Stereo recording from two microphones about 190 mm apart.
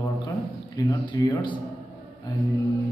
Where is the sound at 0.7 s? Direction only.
25° left (ahead or behind).